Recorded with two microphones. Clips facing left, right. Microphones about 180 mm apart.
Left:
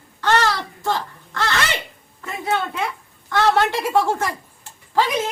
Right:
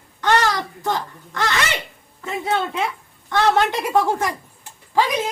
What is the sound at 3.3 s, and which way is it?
Speech, 20° right (ahead or behind).